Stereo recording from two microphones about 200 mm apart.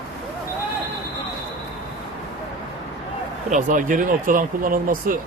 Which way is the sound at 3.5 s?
40° right (ahead or behind).